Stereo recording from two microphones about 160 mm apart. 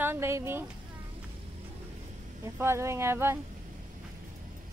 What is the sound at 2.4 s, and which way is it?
Speech, 15° right (ahead or behind).